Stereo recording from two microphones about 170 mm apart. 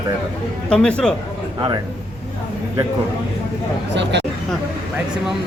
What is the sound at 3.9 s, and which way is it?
Speech, 90° right.